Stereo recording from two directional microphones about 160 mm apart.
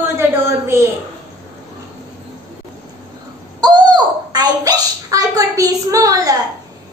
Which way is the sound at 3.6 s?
25° right (ahead or behind).